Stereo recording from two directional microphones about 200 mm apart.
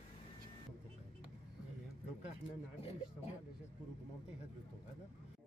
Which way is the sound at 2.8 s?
30° left (ahead or behind).